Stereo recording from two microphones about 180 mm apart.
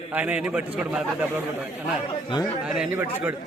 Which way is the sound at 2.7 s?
5° right (ahead or behind).